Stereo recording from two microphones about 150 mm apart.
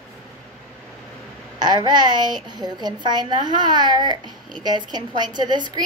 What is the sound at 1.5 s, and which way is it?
A woman's voice, 30° right (ahead or behind).